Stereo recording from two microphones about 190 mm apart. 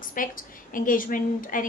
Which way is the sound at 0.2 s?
45° left (ahead or behind).